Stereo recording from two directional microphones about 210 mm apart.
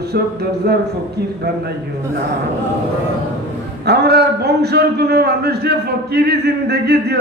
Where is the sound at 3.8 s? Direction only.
50° right (ahead or behind).